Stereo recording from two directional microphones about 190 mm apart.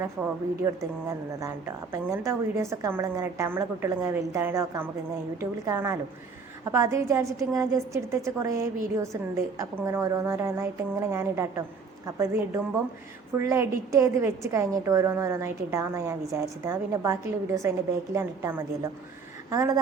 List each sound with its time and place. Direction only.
0.0 s a woman's voice: 15° right (ahead or behind)